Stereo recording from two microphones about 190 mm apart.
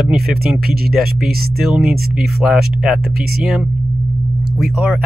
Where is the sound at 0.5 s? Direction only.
55° right (ahead or behind).